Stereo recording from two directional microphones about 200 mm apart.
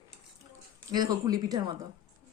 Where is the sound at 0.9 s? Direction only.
20° right (ahead or behind).